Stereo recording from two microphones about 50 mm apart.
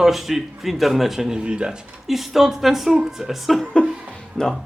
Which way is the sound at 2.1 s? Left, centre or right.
Centre.